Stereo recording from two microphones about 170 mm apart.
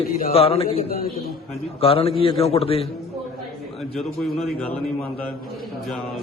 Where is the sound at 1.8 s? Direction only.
35° left (ahead or behind).